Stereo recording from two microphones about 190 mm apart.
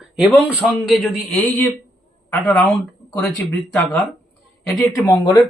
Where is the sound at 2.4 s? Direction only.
5° left (ahead or behind).